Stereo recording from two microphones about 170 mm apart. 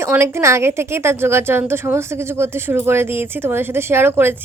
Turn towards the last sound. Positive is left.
turn(degrees=-15)  # may be behind; listen again after turning